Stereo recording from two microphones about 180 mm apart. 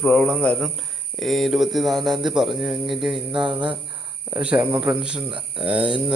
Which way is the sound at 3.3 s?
25° right (ahead or behind).